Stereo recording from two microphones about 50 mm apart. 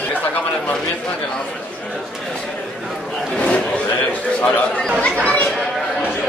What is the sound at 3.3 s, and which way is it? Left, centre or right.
A man's voice, left.